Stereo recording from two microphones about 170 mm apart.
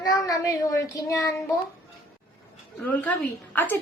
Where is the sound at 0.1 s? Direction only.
20° left (ahead or behind).